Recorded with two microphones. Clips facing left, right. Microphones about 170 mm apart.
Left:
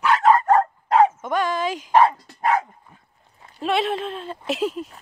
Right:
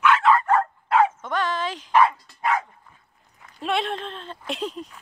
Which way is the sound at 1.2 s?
10° left (ahead or behind).